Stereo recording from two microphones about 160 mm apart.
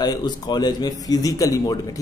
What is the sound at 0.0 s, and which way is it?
Speech, 25° left (ahead or behind).